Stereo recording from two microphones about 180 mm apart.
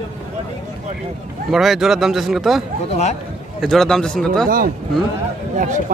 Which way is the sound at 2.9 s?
35° left (ahead or behind).